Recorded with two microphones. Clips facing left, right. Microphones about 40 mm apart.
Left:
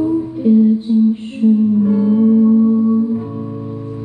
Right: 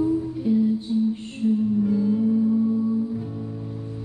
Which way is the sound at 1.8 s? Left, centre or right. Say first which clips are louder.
Left 8 dB; left.